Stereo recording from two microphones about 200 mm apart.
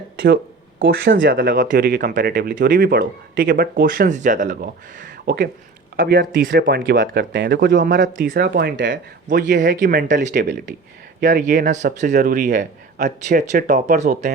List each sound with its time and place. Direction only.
0.8 s speech: 60° right (ahead or behind)
1.5 s speech: 40° right (ahead or behind); by 9.0 s 60° right (ahead or behind)
9.2 s a man's voice: 40° right (ahead or behind)